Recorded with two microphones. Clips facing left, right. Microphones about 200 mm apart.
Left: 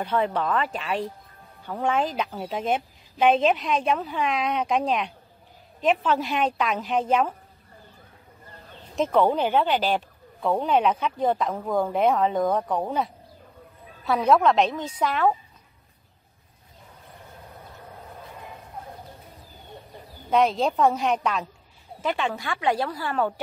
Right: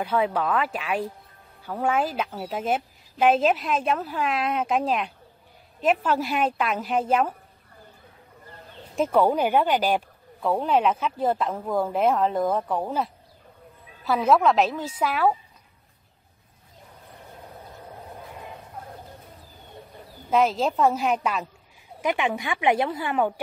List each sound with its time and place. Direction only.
0.0 s a woman's voice: 5° right (ahead or behind)
8.9 s a woman's voice: 10° right (ahead or behind)
20.2 s a woman's voice: 5° right (ahead or behind)
22.0 s speech: 15° right (ahead or behind)